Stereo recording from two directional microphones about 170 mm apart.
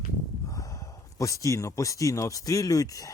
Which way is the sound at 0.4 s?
20° left (ahead or behind).